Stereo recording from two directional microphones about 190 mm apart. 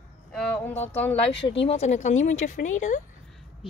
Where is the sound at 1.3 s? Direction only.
70° left (ahead or behind).